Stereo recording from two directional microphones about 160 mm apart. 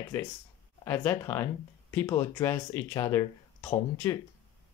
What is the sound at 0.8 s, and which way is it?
Speech, 15° left (ahead or behind).